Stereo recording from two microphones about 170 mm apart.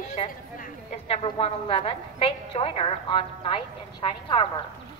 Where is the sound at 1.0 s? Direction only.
35° left (ahead or behind).